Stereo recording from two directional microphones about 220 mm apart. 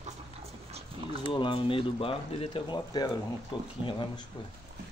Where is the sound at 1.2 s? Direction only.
20° left (ahead or behind).